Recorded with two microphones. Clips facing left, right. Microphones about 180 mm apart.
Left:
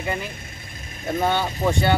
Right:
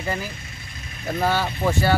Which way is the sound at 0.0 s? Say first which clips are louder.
Even; centre (ahead or behind).